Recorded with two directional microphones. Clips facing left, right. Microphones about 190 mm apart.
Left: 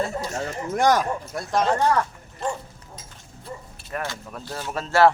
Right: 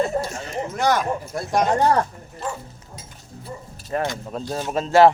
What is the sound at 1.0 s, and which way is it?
Speech, 5° right (ahead or behind).